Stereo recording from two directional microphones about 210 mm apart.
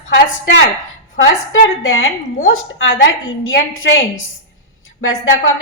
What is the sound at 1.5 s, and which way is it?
A woman's voice, 70° left (ahead or behind).